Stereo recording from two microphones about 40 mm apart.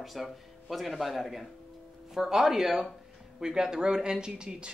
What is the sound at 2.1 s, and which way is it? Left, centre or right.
Speech, centre.